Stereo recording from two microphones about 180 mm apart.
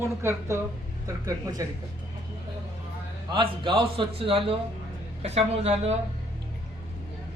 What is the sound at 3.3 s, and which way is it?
A man's voice, 30° right (ahead or behind).